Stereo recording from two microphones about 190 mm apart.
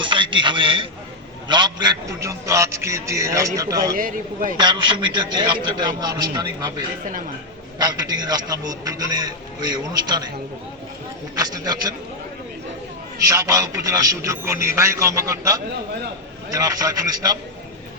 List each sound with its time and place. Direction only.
0.0 s a man's voice: 25° right (ahead or behind)
3.9 s speech: 45° right (ahead or behind)
4.5 s a man's voice: 25° right (ahead or behind)
7.0 s speech: 45° right (ahead or behind)
7.8 s a man's voice: 20° right (ahead or behind)
11.3 s a man's voice: 20° right (ahead or behind)
13.2 s a man's voice: 15° right (ahead or behind)